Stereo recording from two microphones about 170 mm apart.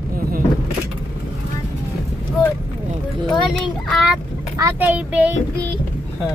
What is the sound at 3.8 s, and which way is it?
Child singing, centre (ahead or behind).